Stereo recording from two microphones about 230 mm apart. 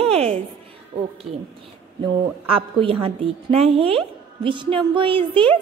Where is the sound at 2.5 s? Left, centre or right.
Right.